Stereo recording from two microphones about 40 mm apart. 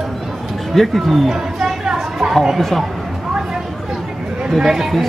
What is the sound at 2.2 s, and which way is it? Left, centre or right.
Speech, right.